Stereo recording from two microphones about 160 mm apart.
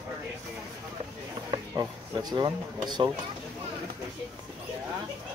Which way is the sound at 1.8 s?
25° right (ahead or behind).